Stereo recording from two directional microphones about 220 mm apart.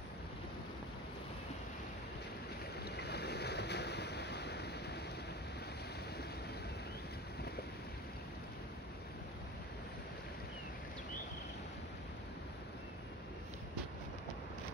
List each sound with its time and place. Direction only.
2.8 s boat: 45° left (ahead or behind)